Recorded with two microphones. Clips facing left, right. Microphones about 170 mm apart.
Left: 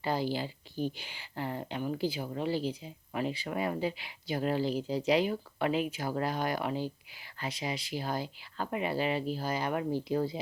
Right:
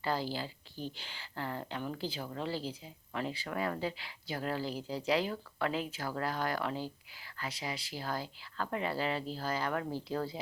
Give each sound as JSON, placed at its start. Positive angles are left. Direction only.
{"t": 0.0, "sound": "speech", "side_deg": 20}